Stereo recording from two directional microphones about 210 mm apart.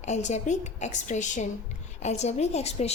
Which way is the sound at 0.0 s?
35° left (ahead or behind).